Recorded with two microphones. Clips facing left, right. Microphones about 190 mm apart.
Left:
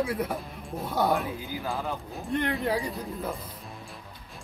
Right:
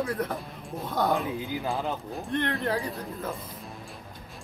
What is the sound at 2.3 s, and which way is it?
Speech, 10° left (ahead or behind).